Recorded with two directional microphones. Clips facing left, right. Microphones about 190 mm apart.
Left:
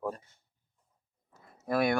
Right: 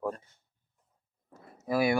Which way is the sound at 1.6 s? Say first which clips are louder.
Right 1 dB; 5° right (ahead or behind).